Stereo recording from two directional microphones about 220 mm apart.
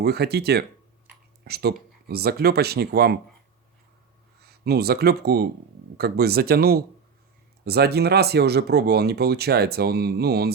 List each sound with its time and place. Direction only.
0.0 s speech: 45° right (ahead or behind)
4.4 s speech: 45° right (ahead or behind)